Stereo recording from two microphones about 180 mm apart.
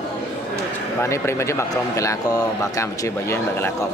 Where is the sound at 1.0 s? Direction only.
15° left (ahead or behind).